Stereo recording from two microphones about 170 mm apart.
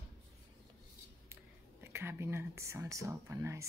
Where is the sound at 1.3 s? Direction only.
15° right (ahead or behind).